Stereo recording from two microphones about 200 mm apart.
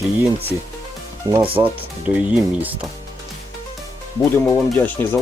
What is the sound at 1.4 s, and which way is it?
Speech, 25° right (ahead or behind).